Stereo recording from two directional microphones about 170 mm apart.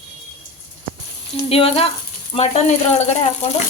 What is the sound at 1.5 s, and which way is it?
Speech, 35° left (ahead or behind).